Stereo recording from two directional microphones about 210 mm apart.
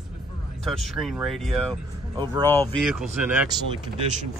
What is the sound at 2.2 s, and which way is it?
Speech, 20° right (ahead or behind).